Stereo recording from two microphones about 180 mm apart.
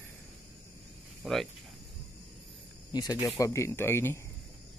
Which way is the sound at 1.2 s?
Centre (ahead or behind).